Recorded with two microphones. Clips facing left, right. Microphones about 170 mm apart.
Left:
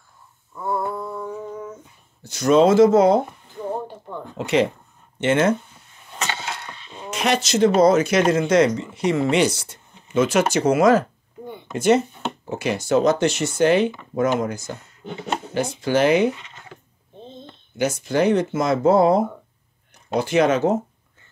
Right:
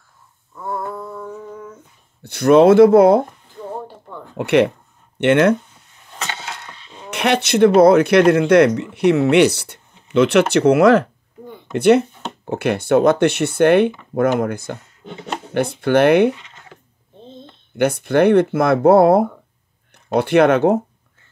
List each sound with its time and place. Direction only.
0.6 s a sound: 5° left (ahead or behind)
2.2 s speech: 60° right (ahead or behind)
4.4 s speech: 65° right (ahead or behind)
7.1 s speech: 60° right (ahead or behind)
17.7 s speech: 60° right (ahead or behind)